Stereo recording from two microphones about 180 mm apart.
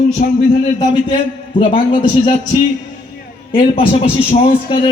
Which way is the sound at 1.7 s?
30° left (ahead or behind).